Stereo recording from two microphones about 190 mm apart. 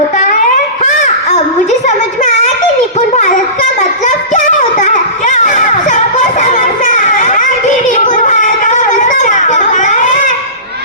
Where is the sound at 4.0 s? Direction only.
40° left (ahead or behind).